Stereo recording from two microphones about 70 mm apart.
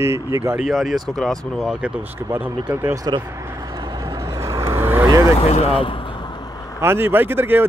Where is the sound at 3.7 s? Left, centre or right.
Right.